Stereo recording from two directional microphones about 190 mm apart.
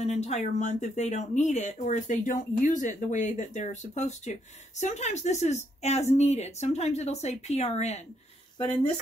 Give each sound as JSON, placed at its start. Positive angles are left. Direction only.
{"t": 0.0, "sound": "speech", "side_deg": 35}